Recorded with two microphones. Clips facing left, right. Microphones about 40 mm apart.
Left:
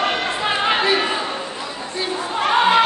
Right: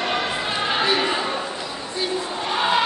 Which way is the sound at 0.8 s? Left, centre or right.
Centre.